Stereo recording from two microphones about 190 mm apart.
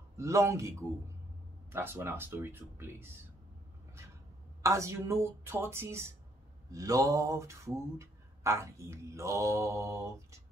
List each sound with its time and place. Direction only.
0.2 s mantra: 15° right (ahead or behind)
4.6 s mantra: 15° right (ahead or behind)